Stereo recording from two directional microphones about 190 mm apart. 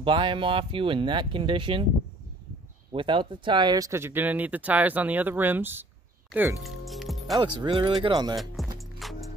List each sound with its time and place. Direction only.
0.0 s speech: 25° right (ahead or behind)
2.9 s speech: 25° right (ahead or behind); by 5.9 s 10° right (ahead or behind)
6.6 s music: centre (ahead or behind)
7.3 s speech: 25° right (ahead or behind)
8.6 s music: centre (ahead or behind)